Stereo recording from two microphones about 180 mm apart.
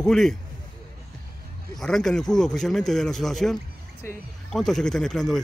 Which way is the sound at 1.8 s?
Centre (ahead or behind).